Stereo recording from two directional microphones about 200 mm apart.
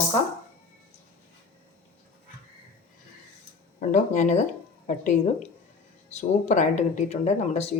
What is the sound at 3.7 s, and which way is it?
Speech, 40° left (ahead or behind).